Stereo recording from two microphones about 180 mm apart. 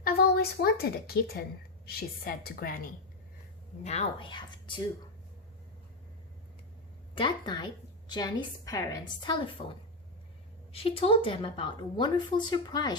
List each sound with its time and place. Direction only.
0.0 s a woman's voice: 55° left (ahead or behind)
3.8 s a woman's voice: 30° left (ahead or behind)
7.2 s a woman's voice: 25° left (ahead or behind)
9.6 s a woman's voice: 35° left (ahead or behind)